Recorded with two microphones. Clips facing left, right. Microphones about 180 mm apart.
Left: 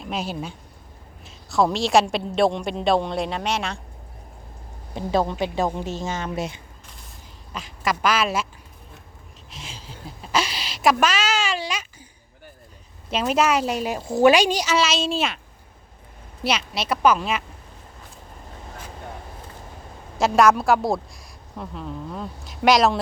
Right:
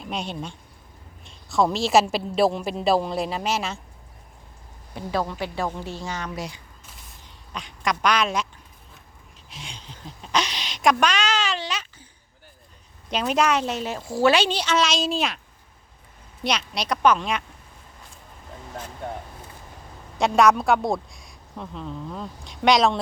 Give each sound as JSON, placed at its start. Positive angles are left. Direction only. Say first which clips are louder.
{"t": 0.0, "sound": "a man's voice", "louder": "left 2 dB", "side_deg": 5}
{"t": 4.9, "sound": "a woman's voice", "louder": "left 4 dB", "side_deg": 25}
{"t": 7.5, "sound": "a man's voice", "louder": "left 1 dB", "side_deg": 5}
{"t": 9.5, "sound": "a sound", "louder": "left 1 dB", "side_deg": 0}
{"t": 13.1, "sound": "a woman's voice", "louder": "left 1 dB", "side_deg": 0}
{"t": 16.4, "sound": "a man's voice", "louder": "left 2 dB", "side_deg": 5}
{"t": 20.1, "sound": "a woman's voice", "louder": "left 1 dB", "side_deg": 0}